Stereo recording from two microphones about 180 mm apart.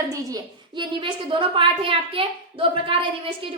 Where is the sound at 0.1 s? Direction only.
20° right (ahead or behind).